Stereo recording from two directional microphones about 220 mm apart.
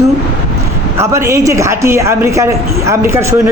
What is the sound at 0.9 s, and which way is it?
Speech, 10° right (ahead or behind).